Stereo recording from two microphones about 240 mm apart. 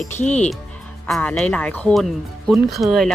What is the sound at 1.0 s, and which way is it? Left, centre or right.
Speech, centre.